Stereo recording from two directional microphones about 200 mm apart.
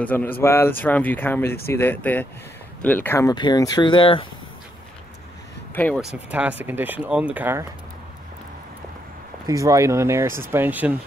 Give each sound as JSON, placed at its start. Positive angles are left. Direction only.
{"t": 0.0, "sound": "speech", "side_deg": 10}
{"t": 5.9, "sound": "speech", "side_deg": -5}
{"t": 9.5, "sound": "speech", "side_deg": -15}